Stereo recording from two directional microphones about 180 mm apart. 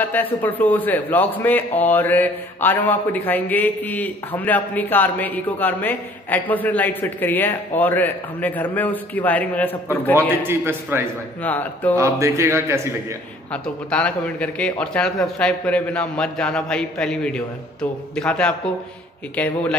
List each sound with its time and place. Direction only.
0.0 s a man's voice: 10° left (ahead or behind)
10.5 s speech: 10° right (ahead or behind)
11.4 s a man's voice: 10° left (ahead or behind)
12.0 s speech: 15° right (ahead or behind)
13.5 s a man's voice: 5° left (ahead or behind)